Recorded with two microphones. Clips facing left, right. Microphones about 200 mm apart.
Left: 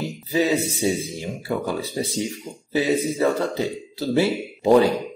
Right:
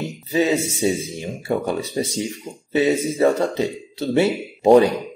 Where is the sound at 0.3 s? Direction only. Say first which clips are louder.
Right 2 dB; 25° right (ahead or behind).